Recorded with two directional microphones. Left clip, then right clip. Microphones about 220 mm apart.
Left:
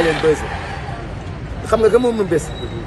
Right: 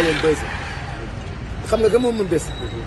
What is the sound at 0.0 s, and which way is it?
Speech, 45° left (ahead or behind).